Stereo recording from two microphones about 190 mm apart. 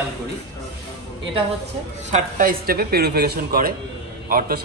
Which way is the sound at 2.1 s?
40° right (ahead or behind).